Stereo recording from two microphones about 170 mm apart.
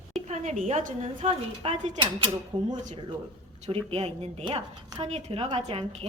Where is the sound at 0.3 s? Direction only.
45° right (ahead or behind).